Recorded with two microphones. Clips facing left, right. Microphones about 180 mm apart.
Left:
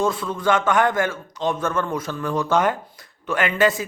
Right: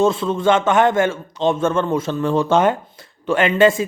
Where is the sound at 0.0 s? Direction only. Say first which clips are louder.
Right 6 dB; 25° right (ahead or behind).